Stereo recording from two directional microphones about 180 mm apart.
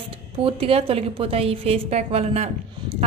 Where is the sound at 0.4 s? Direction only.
30° right (ahead or behind).